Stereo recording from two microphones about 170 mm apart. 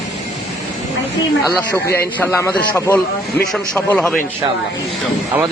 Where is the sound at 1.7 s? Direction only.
15° left (ahead or behind).